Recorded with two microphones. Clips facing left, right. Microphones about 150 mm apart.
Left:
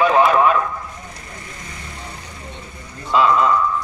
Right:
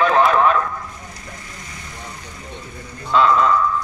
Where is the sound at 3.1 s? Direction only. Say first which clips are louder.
Even; 5° left (ahead or behind).